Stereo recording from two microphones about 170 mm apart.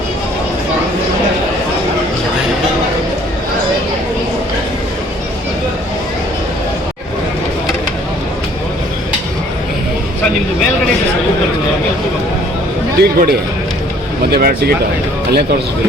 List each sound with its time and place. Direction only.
13.0 s a man's voice: 65° right (ahead or behind)
14.3 s speech: 65° right (ahead or behind)